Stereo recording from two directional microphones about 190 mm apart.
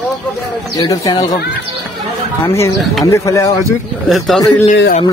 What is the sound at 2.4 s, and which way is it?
Speech, 15° left (ahead or behind).